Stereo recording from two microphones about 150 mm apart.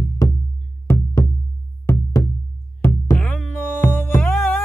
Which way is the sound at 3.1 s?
10° left (ahead or behind).